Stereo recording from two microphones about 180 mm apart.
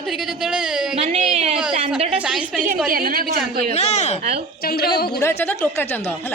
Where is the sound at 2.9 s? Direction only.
55° right (ahead or behind).